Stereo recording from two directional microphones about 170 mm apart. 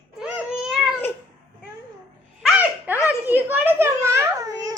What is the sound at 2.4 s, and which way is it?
Babbling, 10° right (ahead or behind).